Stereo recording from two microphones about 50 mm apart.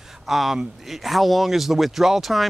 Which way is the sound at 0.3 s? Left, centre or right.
Centre.